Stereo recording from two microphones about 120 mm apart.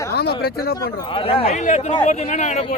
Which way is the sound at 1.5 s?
80° left.